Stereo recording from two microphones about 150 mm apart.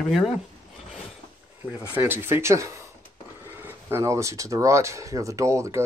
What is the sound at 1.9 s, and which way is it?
Speech, 15° right (ahead or behind).